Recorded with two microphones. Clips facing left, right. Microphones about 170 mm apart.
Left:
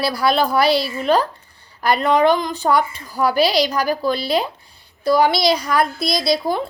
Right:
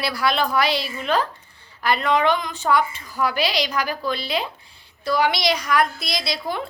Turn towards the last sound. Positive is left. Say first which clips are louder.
# left 8 dB
turn(degrees=35)  # may be behind; listen again after turning